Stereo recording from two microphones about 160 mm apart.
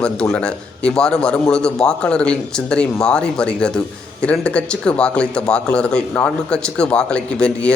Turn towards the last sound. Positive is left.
turn(degrees=5)  # may be behind; listen again after turning